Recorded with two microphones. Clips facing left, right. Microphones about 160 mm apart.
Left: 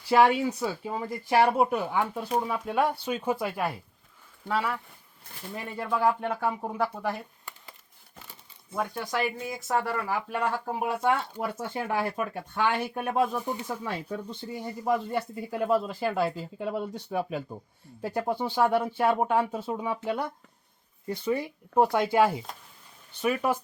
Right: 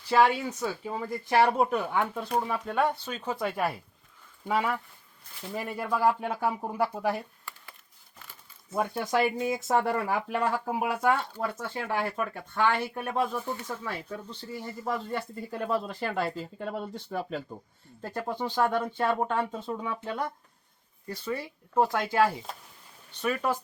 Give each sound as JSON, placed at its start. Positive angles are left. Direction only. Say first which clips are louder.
{"t": 0.1, "sound": "speech", "louder": "left 2 dB", "side_deg": 15}
{"t": 4.4, "sound": "speech", "louder": "right 1 dB", "side_deg": -15}
{"t": 8.7, "sound": "speech", "louder": "right 3 dB", "side_deg": -20}
{"t": 10.2, "sound": "speech", "louder": "right 1 dB", "side_deg": -10}
{"t": 11.6, "sound": "speech", "louder": "left 3 dB", "side_deg": 15}
{"t": 21.1, "sound": "speech", "louder": "left 5 dB", "side_deg": 20}